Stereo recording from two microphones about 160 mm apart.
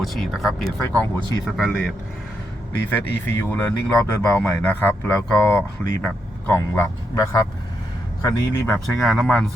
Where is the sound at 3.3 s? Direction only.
15° left (ahead or behind).